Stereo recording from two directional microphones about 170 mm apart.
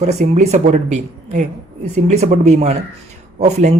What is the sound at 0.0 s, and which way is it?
Speech, 40° right (ahead or behind).